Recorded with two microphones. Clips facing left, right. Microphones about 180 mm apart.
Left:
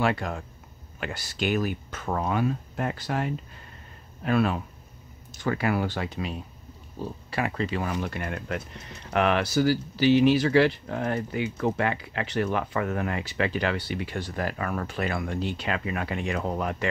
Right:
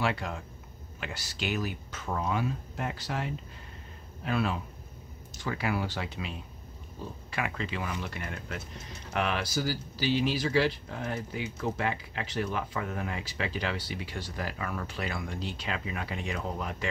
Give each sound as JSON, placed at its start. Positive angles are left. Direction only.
{"t": 0.0, "sound": "speech", "side_deg": 50}